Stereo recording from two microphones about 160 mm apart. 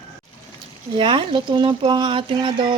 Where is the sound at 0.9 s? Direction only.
30° right (ahead or behind).